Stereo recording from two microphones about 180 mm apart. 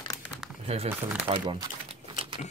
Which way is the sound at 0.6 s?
35° right (ahead or behind).